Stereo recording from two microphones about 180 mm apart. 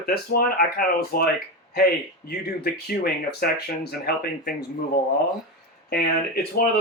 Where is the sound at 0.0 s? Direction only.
55° left (ahead or behind).